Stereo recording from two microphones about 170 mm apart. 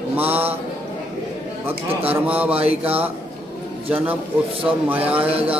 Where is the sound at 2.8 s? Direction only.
10° right (ahead or behind).